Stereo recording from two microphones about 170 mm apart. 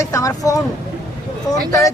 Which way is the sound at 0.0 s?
20° left (ahead or behind).